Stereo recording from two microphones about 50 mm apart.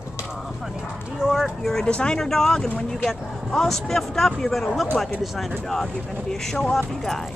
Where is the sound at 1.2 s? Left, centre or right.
Centre.